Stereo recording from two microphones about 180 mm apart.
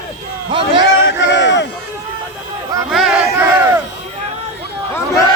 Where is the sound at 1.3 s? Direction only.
75° left (ahead or behind).